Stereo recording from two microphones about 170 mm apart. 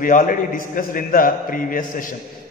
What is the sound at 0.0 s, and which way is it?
A man's voice, 50° left (ahead or behind).